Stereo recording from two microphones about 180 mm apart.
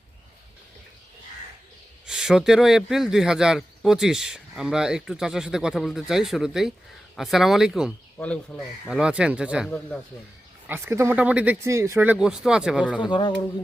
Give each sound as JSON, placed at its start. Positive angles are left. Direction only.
{"t": 2.0, "sound": "speech", "side_deg": -5}
{"t": 9.6, "sound": "speech", "side_deg": 5}
{"t": 10.7, "sound": "speech", "side_deg": -10}
{"t": 13.0, "sound": "speech", "side_deg": 25}